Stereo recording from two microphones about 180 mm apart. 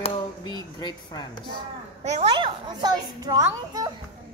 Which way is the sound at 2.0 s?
35° right (ahead or behind).